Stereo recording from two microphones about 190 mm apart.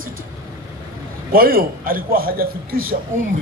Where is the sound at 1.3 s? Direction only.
50° right (ahead or behind).